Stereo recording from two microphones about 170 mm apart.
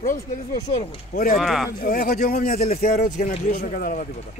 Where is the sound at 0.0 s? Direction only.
50° left (ahead or behind).